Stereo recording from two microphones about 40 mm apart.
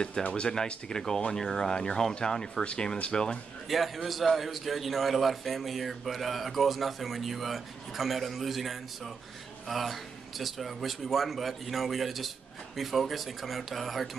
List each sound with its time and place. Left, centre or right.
0.3 s speech: left
3.6 s speech: centre